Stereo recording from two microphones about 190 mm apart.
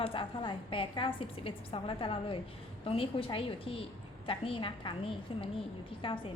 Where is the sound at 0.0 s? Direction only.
30° left (ahead or behind).